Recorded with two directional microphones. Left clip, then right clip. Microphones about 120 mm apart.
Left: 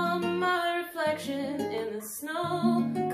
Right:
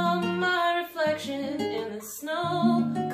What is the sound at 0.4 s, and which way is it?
Music, 20° left (ahead or behind).